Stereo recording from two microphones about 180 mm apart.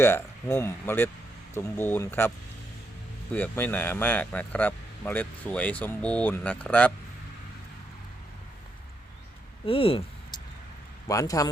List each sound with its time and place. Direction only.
0.0 s speech: 15° left (ahead or behind)
3.3 s speech: 10° left (ahead or behind)
9.6 s a sound: 30° left (ahead or behind)
11.1 s speech: 20° left (ahead or behind)